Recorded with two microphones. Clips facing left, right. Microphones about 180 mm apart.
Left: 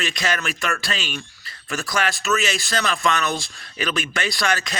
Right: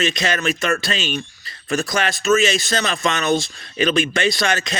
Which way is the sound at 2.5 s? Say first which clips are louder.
Right 3 dB; 20° right (ahead or behind).